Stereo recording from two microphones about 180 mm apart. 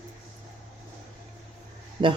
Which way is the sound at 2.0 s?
25° right (ahead or behind).